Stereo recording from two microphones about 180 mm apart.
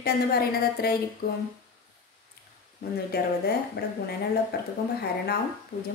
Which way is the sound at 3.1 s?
60° left (ahead or behind).